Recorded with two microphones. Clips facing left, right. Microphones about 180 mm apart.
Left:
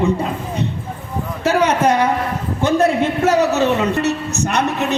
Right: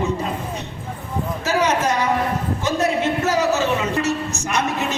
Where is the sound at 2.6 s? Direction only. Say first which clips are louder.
Left 6 dB; 60° left (ahead or behind).